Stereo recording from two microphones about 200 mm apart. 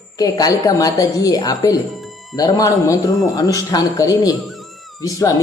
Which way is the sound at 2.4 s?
15° left (ahead or behind).